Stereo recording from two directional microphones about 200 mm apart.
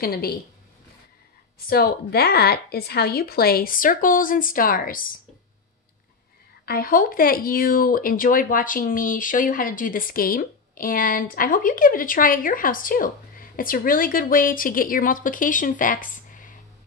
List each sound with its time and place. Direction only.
0.0 s speech: 50° left (ahead or behind)
1.7 s speech: 50° left (ahead or behind)
6.6 s speech: 50° left (ahead or behind)